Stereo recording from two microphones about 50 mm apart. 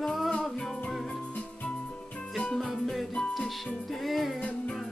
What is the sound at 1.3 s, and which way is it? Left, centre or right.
Music, left.